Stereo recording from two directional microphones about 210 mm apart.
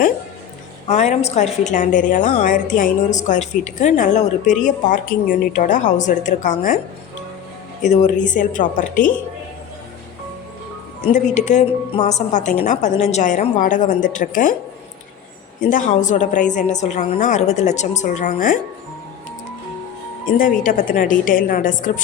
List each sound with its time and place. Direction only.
0.9 s a woman's voice: 35° left (ahead or behind)
7.8 s a woman's voice: 35° left (ahead or behind)
11.1 s a woman's voice: 35° left (ahead or behind)
15.7 s a woman's voice: 35° left (ahead or behind)
20.3 s a woman's voice: 40° left (ahead or behind)